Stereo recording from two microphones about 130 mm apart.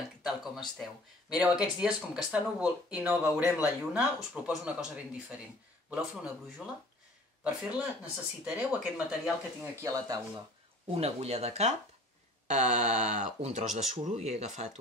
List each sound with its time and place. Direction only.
0.2 s a sound: centre (ahead or behind)
1.3 s speech: 5° right (ahead or behind)
9.8 s speech: 25° right (ahead or behind)
10.9 s speech: 55° right (ahead or behind)